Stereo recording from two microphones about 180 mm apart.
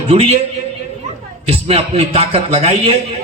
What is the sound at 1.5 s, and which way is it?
A man's voice, 30° right (ahead or behind).